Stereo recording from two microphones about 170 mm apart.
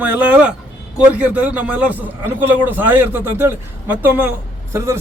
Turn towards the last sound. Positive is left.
turn(degrees=-15)  # may be behind; listen again after turning